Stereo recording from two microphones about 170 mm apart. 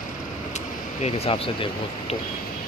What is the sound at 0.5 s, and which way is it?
Speech, 40° left (ahead or behind).